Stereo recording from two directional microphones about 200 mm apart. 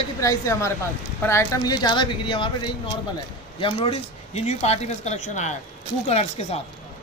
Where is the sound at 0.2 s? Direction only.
15° left (ahead or behind); by 6.6 s 30° left (ahead or behind).